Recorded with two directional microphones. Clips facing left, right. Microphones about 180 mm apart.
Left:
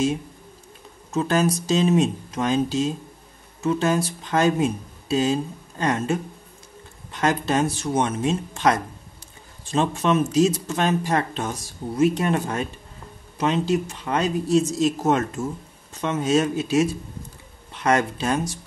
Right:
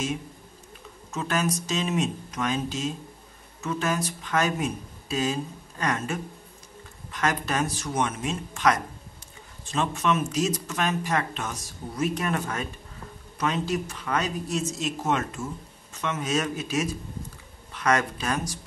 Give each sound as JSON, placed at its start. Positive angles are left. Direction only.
{"t": 1.1, "sound": "speech", "side_deg": 35}